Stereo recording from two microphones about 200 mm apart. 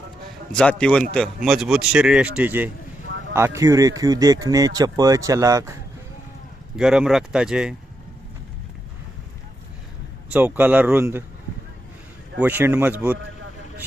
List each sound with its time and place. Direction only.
0.5 s speech: 5° left (ahead or behind); by 5.7 s 15° right (ahead or behind)
6.7 s speech: 5° right (ahead or behind)
10.3 s speech: 10° right (ahead or behind)
12.4 s speech: 10° right (ahead or behind)